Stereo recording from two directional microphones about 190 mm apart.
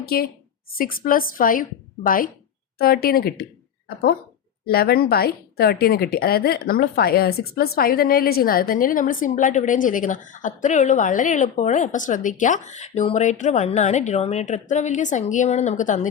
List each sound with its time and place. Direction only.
0.8 s a woman's voice: 50° left (ahead or behind)
4.6 s a woman's voice: 55° left (ahead or behind)